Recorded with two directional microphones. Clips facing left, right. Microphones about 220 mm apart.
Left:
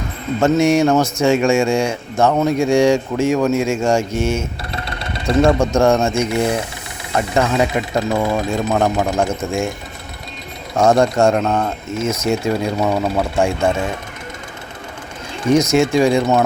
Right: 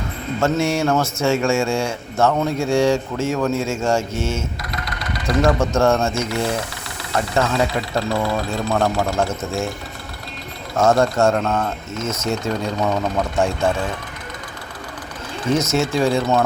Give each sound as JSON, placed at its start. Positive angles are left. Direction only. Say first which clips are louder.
{"t": 0.3, "sound": "a man's voice", "louder": "left 6 dB", "side_deg": 15}
{"t": 4.7, "sound": "sewing machine", "louder": "left 2 dB", "side_deg": 25}
{"t": 5.5, "sound": "a man's voice", "louder": "left 3 dB", "side_deg": 15}
{"t": 10.8, "sound": "a man's voice", "louder": "left 3 dB", "side_deg": 15}
{"t": 15.5, "sound": "a man's voice", "louder": "left 6 dB", "side_deg": 15}